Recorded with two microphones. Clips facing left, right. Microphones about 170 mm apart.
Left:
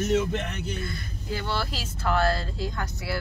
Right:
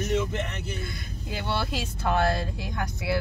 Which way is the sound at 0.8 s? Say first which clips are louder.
Left 1 dB; 15° right (ahead or behind).